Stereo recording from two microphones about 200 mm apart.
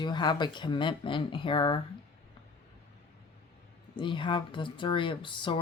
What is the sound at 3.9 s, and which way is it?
A woman's voice, 25° left (ahead or behind).